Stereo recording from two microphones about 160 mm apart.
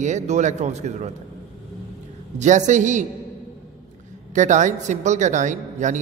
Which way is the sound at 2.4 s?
50° right (ahead or behind).